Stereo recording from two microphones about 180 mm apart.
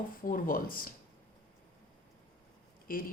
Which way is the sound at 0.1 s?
50° left (ahead or behind).